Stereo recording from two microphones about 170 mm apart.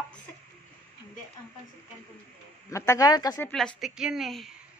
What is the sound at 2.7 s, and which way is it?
Speech, 15° left (ahead or behind).